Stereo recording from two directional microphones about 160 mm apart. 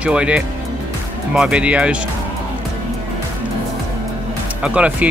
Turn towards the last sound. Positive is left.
turn(degrees=-10)  # may be behind; listen again after turning